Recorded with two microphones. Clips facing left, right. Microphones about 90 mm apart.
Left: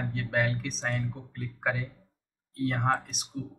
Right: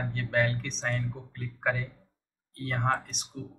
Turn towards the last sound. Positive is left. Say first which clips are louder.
# left 3 dB
turn(degrees=5)  # may be behind; listen again after turning